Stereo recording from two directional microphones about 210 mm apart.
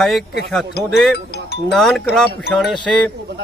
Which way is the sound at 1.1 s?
50° left (ahead or behind).